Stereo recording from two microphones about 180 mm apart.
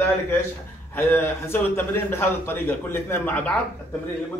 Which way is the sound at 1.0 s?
15° left (ahead or behind).